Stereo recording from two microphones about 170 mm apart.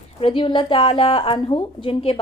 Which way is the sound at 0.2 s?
30° left (ahead or behind).